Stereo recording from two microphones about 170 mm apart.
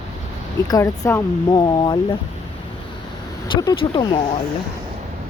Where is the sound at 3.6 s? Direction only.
30° left (ahead or behind).